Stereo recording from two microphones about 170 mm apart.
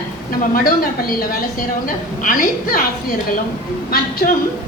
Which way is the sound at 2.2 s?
55° left (ahead or behind).